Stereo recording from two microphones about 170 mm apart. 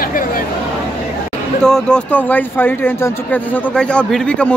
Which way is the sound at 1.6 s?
5° left (ahead or behind).